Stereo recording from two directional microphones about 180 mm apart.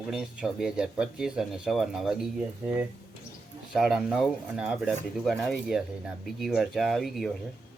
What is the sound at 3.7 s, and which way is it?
Speech, centre (ahead or behind).